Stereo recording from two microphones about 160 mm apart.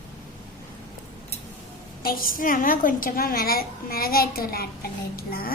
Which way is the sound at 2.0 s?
60° left (ahead or behind).